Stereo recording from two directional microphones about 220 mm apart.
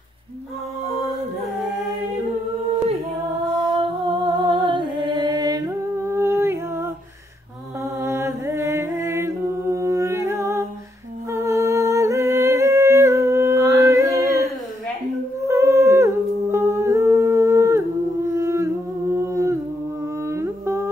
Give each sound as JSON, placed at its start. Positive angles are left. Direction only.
{"t": 3.8, "sound": "music", "side_deg": -20}
{"t": 7.8, "sound": "mantra", "side_deg": -15}
{"t": 11.3, "sound": "humming", "side_deg": -15}
{"t": 20.2, "sound": "a sound", "side_deg": -10}